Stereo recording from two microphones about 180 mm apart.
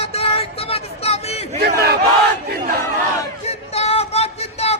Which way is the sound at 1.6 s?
65° right (ahead or behind).